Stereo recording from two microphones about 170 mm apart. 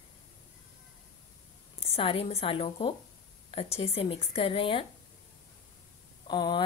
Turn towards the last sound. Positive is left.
turn(degrees=25)  # may be behind; listen again after turning